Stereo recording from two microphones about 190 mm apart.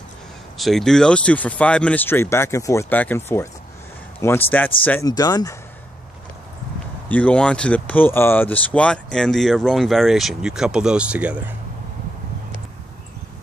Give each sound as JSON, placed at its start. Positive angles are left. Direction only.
{"t": 0.6, "sound": "speech", "side_deg": 0}
{"t": 4.5, "sound": "speech", "side_deg": 10}
{"t": 5.0, "sound": "speech", "side_deg": 20}
{"t": 7.1, "sound": "speech", "side_deg": 5}